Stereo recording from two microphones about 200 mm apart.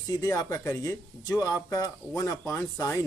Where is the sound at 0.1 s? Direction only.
15° left (ahead or behind).